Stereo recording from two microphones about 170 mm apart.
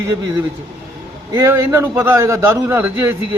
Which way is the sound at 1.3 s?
15° right (ahead or behind).